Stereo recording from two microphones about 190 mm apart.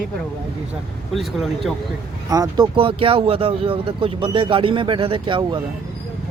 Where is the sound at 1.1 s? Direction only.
Centre (ahead or behind).